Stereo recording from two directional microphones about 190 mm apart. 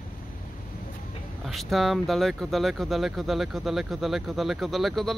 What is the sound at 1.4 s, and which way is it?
Speech, centre (ahead or behind).